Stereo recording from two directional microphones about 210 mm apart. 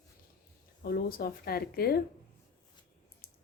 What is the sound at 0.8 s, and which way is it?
A woman's voice, 45° left (ahead or behind).